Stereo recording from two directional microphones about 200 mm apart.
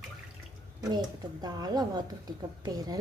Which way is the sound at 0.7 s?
20° right (ahead or behind).